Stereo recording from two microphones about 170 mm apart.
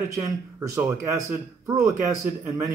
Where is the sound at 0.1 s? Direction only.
20° right (ahead or behind).